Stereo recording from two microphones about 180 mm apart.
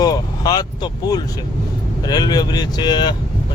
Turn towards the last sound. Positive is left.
turn(degrees=25)  # may be behind; listen again after turning